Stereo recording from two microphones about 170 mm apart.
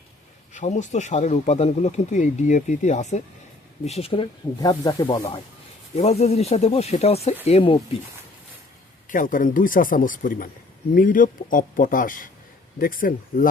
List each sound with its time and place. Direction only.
0.5 s speech: 45° left (ahead or behind); by 5.4 s 25° left (ahead or behind)
6.0 s speech: 40° left (ahead or behind)
9.0 s speech: 50° left (ahead or behind)